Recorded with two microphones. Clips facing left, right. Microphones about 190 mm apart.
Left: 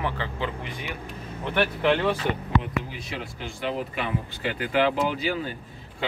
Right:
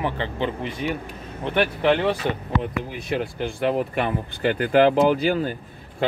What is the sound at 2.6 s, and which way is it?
Speech, 55° right (ahead or behind).